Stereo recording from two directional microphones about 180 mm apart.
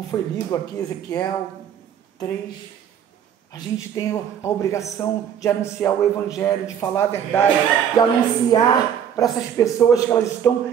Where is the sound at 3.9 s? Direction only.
15° left (ahead or behind).